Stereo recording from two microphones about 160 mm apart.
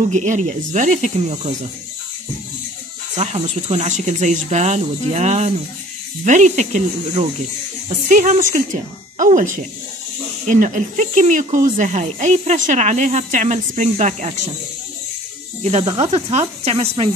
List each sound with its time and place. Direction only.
0.1 s speech: 50° right (ahead or behind)
3.2 s speech: 45° right (ahead or behind)
16.0 s speech: 40° right (ahead or behind)